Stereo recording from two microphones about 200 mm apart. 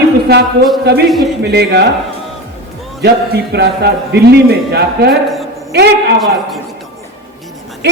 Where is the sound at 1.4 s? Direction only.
55° right (ahead or behind).